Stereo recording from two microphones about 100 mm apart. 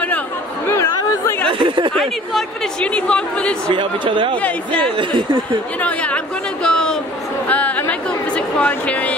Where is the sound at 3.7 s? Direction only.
55° right (ahead or behind).